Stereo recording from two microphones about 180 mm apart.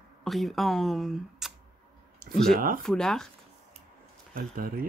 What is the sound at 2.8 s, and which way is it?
Speech, centre (ahead or behind).